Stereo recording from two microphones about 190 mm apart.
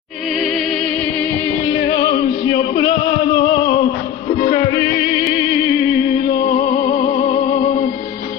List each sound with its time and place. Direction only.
1.7 s music: 20° left (ahead or behind)
6.6 s music: 20° left (ahead or behind)